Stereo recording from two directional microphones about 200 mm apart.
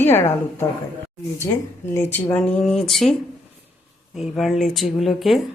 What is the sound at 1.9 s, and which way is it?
A woman's voice, 10° left (ahead or behind).